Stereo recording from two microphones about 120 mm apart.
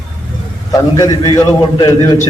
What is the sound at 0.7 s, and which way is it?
A man's voice, 30° left (ahead or behind).